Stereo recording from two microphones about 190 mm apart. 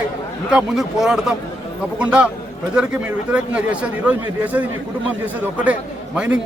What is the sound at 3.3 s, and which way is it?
Speech, 5° right (ahead or behind).